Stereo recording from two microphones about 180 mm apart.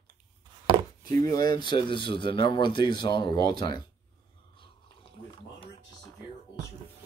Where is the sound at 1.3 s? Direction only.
20° left (ahead or behind).